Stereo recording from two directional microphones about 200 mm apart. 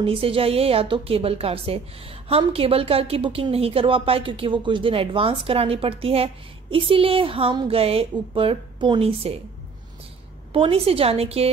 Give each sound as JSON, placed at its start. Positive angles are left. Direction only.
{"t": 0.0, "sound": "a woman's voice", "side_deg": -25}
{"t": 10.5, "sound": "a woman's voice", "side_deg": -25}